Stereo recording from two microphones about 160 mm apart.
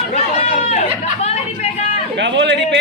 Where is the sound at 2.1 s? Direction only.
90° right.